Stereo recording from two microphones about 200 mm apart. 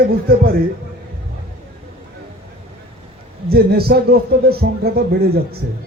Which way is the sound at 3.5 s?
50° right (ahead or behind).